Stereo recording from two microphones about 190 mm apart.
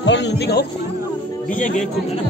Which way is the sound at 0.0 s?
70° left (ahead or behind).